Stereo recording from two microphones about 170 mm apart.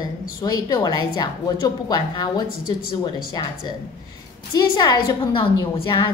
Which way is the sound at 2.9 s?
25° left (ahead or behind).